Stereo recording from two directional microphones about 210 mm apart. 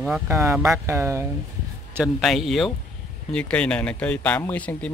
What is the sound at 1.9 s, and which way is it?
A man's voice, centre (ahead or behind).